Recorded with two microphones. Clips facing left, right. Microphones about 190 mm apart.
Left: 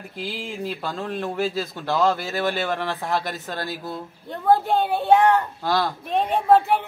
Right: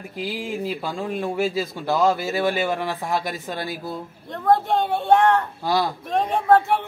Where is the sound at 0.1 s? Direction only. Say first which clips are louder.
Right 4 dB; 15° right (ahead or behind).